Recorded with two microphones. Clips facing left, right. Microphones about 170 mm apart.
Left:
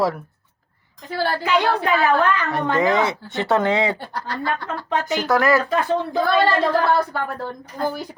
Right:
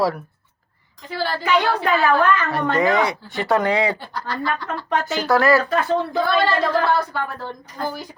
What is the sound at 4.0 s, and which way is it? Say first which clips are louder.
Speech: left 1 dB; 55° left (ahead or behind).